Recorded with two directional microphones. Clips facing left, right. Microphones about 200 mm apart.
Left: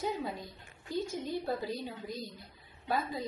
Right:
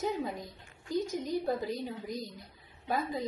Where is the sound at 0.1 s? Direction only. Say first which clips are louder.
Right 2 dB; 20° right (ahead or behind).